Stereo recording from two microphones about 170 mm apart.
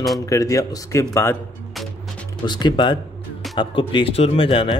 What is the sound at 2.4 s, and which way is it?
A man's voice, 25° left (ahead or behind).